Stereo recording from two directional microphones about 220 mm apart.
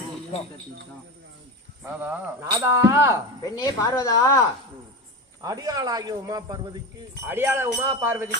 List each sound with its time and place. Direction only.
1.8 s speech: 10° right (ahead or behind)
3.4 s a woman's voice: 15° left (ahead or behind)
5.4 s speech: 15° right (ahead or behind)